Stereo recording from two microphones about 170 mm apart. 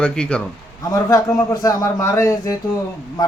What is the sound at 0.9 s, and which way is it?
A man's voice, 20° left (ahead or behind).